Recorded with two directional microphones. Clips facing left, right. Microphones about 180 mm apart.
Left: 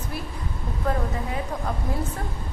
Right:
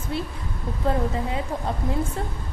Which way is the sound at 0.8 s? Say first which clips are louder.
Right 2 dB; 30° right (ahead or behind).